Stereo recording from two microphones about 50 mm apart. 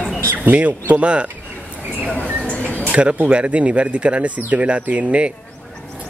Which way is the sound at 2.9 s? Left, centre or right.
Right.